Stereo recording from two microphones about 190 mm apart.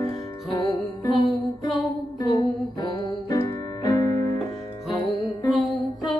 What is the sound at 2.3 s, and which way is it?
Music, 25° left (ahead or behind).